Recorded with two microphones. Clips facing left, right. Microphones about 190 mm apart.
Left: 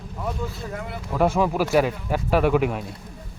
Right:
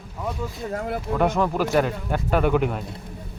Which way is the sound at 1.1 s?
5° left (ahead or behind).